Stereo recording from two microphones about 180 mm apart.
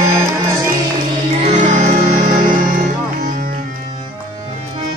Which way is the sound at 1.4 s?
40° right (ahead or behind).